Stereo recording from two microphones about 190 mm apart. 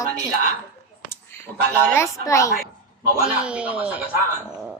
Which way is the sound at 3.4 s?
5° right (ahead or behind).